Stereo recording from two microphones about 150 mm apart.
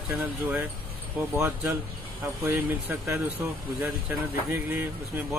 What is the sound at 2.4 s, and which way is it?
Speech, 15° right (ahead or behind).